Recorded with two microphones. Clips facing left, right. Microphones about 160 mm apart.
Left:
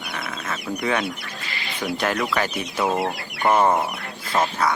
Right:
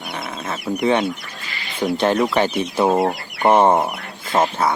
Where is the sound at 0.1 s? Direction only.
30° right (ahead or behind).